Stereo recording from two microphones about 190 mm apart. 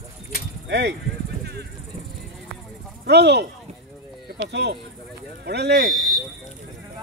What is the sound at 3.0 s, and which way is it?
Speech, 65° right (ahead or behind).